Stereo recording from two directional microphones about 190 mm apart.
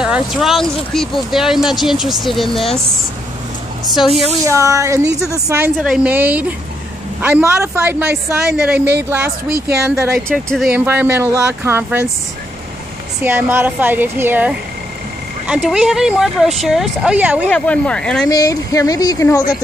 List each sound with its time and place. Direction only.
0.0 s speech: 5° right (ahead or behind)
3.8 s speech: centre (ahead or behind)
4.5 s a man's voice: 15° right (ahead or behind)
13.2 s a man's voice: 10° right (ahead or behind)
17.5 s speech: 5° left (ahead or behind)
18.3 s speech: 15° left (ahead or behind)